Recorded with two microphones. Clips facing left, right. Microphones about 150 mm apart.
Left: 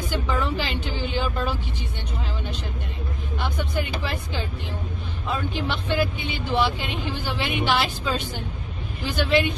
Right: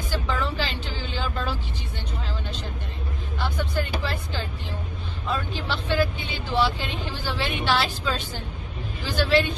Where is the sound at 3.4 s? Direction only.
15° left (ahead or behind).